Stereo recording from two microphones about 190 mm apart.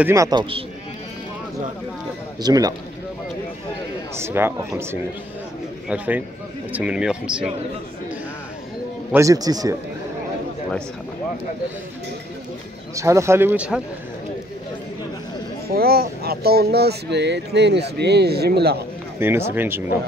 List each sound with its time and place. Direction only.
0.0 s a man's voice: 15° right (ahead or behind)
2.4 s a man's voice: 20° right (ahead or behind)
4.2 s speech: 10° right (ahead or behind)
5.9 s speech: 10° right (ahead or behind)
9.1 s speech: 15° right (ahead or behind)
12.9 s speech: 15° right (ahead or behind)
15.7 s speech: 55° right (ahead or behind)
19.1 s speech: 10° right (ahead or behind)